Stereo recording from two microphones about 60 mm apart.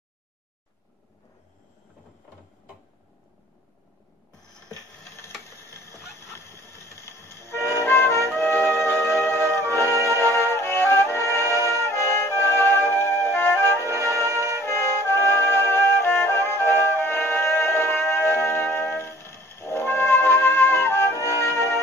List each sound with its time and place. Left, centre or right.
5.6 s music: left